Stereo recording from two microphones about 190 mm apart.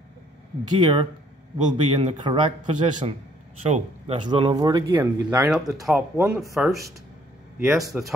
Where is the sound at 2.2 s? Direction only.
25° right (ahead or behind); by 6.8 s centre (ahead or behind).